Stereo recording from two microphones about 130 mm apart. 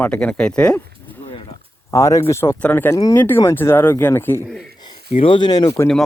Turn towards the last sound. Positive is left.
turn(degrees=30)  # may be behind; listen again after turning